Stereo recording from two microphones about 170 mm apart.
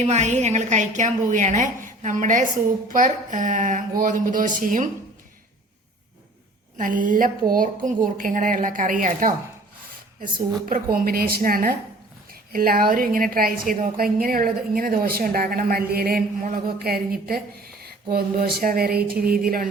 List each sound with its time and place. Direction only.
0.0 s a woman's voice: 40° right (ahead or behind)
6.7 s a woman's voice: 50° right (ahead or behind)